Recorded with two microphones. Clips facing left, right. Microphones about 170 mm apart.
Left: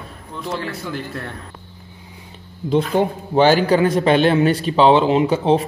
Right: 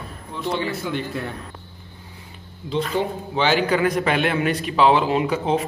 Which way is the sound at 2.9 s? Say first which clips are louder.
Left 6 dB; 45° left (ahead or behind).